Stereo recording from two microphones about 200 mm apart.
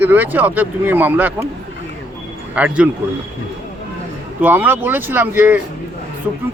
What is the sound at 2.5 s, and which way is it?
Speech, 5° right (ahead or behind).